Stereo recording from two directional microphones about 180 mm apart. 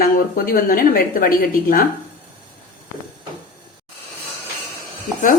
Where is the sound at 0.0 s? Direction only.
55° left (ahead or behind).